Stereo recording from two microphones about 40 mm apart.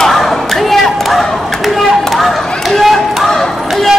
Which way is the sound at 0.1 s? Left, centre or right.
Centre.